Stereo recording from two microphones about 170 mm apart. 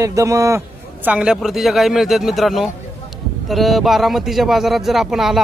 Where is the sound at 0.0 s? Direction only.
20° right (ahead or behind).